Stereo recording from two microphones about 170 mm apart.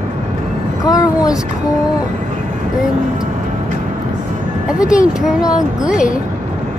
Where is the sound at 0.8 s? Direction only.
20° left (ahead or behind).